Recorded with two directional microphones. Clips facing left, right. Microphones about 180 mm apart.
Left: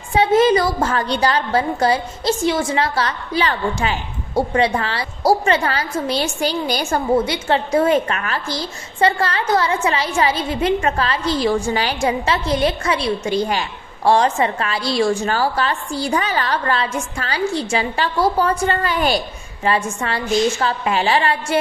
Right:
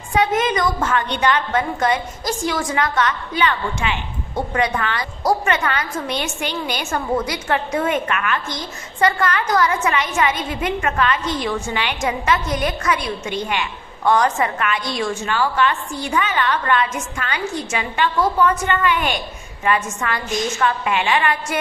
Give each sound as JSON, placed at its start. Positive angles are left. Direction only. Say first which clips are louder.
{"t": 0.1, "sound": "a woman's voice", "louder": "left 5 dB", "side_deg": 30}